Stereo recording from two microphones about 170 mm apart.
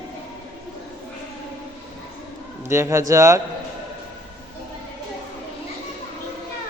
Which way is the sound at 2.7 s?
15° right (ahead or behind).